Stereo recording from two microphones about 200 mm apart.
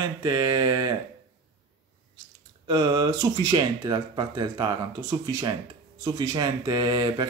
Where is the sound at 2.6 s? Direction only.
20° right (ahead or behind).